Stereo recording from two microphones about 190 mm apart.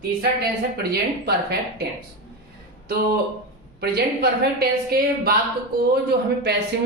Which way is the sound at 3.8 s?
55° right (ahead or behind).